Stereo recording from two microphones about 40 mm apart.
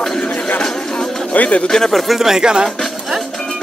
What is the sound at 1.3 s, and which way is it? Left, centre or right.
Speech, left.